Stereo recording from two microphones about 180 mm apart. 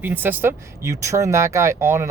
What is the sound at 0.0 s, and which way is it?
Speech, 10° right (ahead or behind).